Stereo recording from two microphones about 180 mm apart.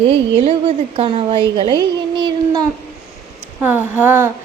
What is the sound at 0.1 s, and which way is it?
A woman's voice, 30° right (ahead or behind).